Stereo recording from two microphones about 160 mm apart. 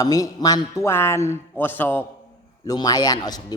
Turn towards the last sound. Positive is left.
turn(degrees=25)  # may be behind; listen again after turning